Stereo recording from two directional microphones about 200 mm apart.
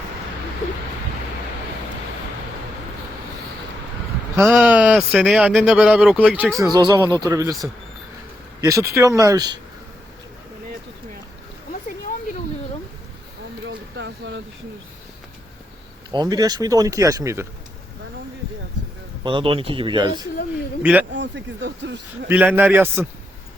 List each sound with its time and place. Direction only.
4.4 s speech: 5° right (ahead or behind)
8.6 s speech: 15° right (ahead or behind)
13.7 s vehicle: 65° right (ahead or behind)
16.1 s speech: 20° right (ahead or behind)
19.2 s speech: 25° right (ahead or behind)
20.8 s speech: 10° right (ahead or behind)
21.1 s speech: 65° right (ahead or behind)
22.3 s speech: 10° right (ahead or behind)